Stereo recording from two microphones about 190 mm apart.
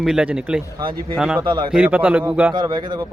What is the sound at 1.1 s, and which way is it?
Speech, 5° right (ahead or behind).